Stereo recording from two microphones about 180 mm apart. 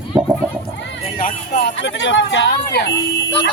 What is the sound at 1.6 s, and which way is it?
Speech, 85° left.